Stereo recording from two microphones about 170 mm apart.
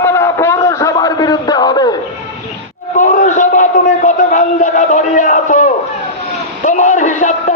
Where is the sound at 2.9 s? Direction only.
45° left (ahead or behind).